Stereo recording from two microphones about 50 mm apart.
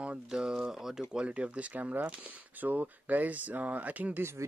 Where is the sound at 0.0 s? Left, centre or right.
Centre.